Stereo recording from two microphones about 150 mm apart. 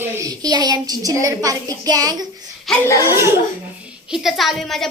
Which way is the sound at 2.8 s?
20° left (ahead or behind).